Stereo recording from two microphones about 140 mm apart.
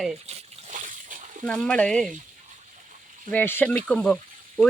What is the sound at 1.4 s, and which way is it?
Speech, 5° left (ahead or behind).